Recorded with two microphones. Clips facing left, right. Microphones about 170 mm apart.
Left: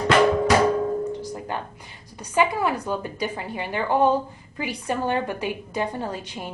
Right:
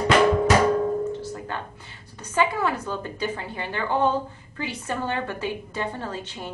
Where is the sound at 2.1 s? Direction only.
10° left (ahead or behind).